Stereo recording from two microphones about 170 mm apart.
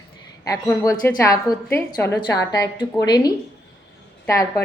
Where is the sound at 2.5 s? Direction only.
25° left (ahead or behind).